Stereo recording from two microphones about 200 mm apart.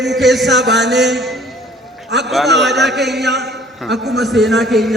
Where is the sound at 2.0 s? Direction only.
60° right (ahead or behind).